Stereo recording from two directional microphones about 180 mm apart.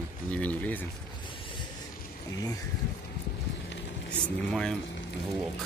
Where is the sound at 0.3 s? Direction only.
10° left (ahead or behind).